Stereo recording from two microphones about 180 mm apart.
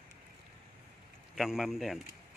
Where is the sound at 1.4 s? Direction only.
Centre (ahead or behind).